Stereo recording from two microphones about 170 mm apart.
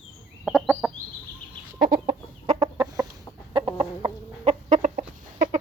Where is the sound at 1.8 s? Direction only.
50° right (ahead or behind).